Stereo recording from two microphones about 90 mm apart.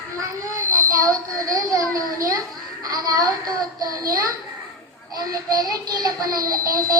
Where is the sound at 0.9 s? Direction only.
40° right (ahead or behind).